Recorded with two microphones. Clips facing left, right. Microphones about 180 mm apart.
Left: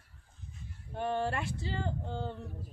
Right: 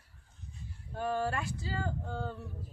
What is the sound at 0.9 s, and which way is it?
A woman's voice, 25° left (ahead or behind).